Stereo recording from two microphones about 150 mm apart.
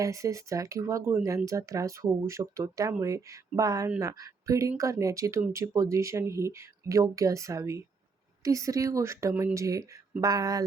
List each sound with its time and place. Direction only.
0.0 s speech: 20° right (ahead or behind)